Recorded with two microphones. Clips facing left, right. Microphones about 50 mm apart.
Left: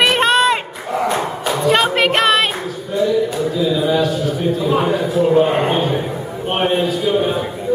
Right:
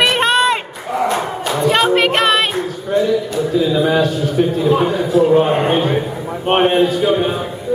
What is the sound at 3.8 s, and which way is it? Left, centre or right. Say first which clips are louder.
Speech: right 2 dB; right.